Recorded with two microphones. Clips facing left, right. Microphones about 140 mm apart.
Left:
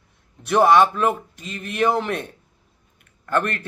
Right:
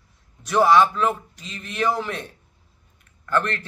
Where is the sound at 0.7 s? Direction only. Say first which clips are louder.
Left 1 dB; 50° left (ahead or behind).